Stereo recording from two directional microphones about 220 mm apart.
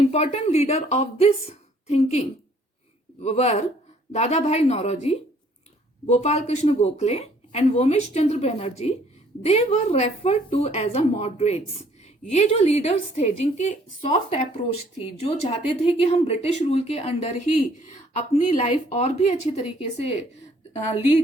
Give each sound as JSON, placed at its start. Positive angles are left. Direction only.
{"t": 0.1, "sound": "a woman's voice", "side_deg": 30}